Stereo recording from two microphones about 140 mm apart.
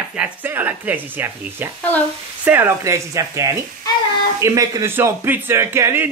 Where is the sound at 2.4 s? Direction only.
15° right (ahead or behind).